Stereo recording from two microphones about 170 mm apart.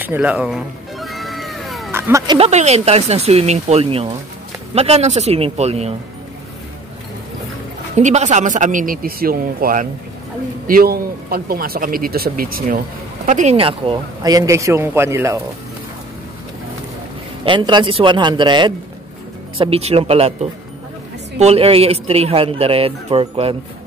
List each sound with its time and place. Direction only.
0.0 s cat: 10° right (ahead or behind)
1.9 s a sound: 15° right (ahead or behind)
2.2 s speech: 35° right (ahead or behind)
7.9 s a man's voice: 45° right (ahead or behind)
13.6 s speech: 30° right (ahead or behind); by 15.4 s 15° right (ahead or behind)
17.5 s speech: 30° right (ahead or behind)
21.4 s speech: 35° right (ahead or behind)